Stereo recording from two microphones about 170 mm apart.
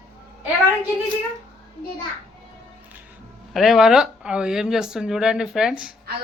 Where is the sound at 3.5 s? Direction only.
Centre (ahead or behind).